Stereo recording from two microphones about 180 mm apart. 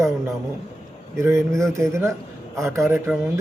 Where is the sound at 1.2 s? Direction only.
15° right (ahead or behind).